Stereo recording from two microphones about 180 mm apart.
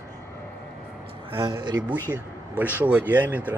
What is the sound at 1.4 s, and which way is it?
Speech, 25° right (ahead or behind).